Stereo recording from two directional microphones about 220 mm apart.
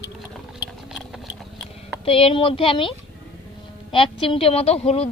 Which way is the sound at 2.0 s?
25° left (ahead or behind).